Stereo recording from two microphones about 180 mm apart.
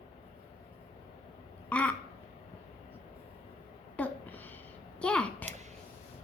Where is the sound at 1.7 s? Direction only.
5° left (ahead or behind).